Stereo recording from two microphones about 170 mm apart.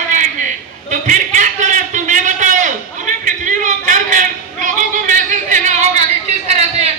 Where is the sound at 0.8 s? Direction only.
45° right (ahead or behind).